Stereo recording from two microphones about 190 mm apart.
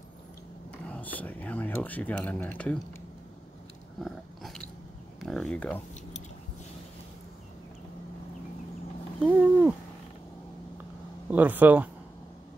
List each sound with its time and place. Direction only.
0.8 s speech: 10° left (ahead or behind)
4.0 s dog: centre (ahead or behind)
5.2 s speech: centre (ahead or behind)
9.2 s a sound: 5° right (ahead or behind)
11.2 s speech: 10° right (ahead or behind)